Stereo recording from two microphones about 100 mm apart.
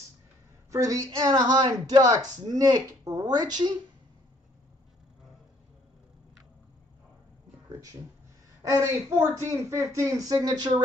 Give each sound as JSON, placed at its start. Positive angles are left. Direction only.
{"t": 0.7, "sound": "speech", "side_deg": -35}
{"t": 8.7, "sound": "a woman's voice", "side_deg": -30}